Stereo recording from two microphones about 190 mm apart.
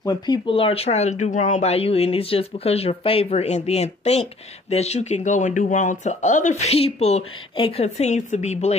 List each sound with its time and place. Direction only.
0.0 s speech: 20° left (ahead or behind)